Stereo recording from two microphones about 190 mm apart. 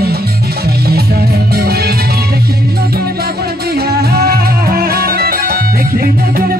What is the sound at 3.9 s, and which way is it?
Music, 55° right (ahead or behind).